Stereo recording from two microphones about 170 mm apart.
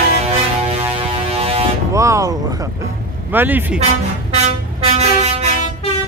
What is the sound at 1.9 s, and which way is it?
Vehicle, 20° right (ahead or behind).